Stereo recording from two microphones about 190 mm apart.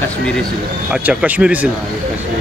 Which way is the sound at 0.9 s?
10° right (ahead or behind).